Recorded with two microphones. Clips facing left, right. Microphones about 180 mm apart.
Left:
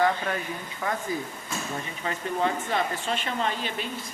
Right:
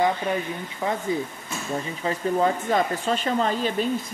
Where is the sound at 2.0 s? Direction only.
40° right (ahead or behind).